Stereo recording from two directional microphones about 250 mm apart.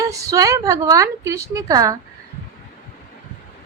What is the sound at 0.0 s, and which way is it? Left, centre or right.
Speech, centre.